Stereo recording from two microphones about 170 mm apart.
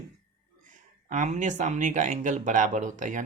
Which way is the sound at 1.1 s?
45° right (ahead or behind).